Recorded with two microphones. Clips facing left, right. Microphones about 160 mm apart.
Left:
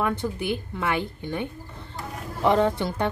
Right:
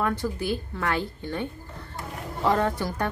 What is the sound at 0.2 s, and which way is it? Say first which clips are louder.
Speech: even; 20° left (ahead or behind).